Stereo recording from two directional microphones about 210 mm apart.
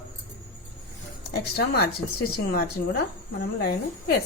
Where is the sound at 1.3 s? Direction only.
50° left (ahead or behind).